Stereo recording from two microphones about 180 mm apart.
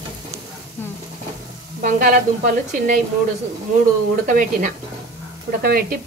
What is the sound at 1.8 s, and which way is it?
A woman's voice, 50° right (ahead or behind).